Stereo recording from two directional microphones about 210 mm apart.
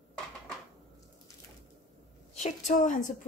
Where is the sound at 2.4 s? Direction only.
35° left (ahead or behind).